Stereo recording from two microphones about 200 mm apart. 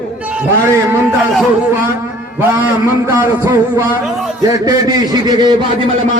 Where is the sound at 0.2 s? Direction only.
5° right (ahead or behind).